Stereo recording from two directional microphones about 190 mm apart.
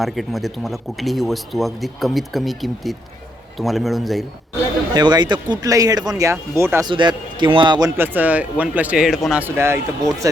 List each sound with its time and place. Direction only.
0.0 s speech: centre (ahead or behind)
4.9 s speech: 20° right (ahead or behind)
7.9 s speech: 10° right (ahead or behind)